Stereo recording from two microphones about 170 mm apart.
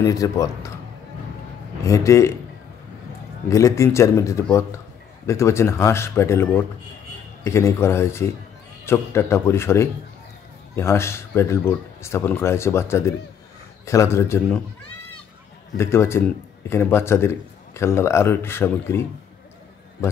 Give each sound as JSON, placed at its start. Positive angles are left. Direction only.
{"t": 0.0, "sound": "speech", "side_deg": 20}
{"t": 1.9, "sound": "a man's voice", "side_deg": 20}
{"t": 3.4, "sound": "a man's voice", "side_deg": 20}
{"t": 15.8, "sound": "a man's voice", "side_deg": 15}